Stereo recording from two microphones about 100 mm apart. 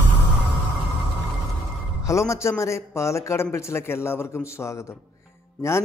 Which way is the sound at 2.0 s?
30° left (ahead or behind).